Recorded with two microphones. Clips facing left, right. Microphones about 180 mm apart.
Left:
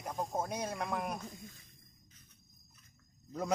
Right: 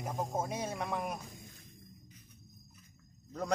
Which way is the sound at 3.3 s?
5° left (ahead or behind).